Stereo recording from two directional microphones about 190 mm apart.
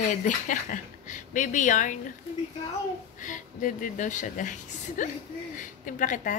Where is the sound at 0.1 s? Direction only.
40° left (ahead or behind).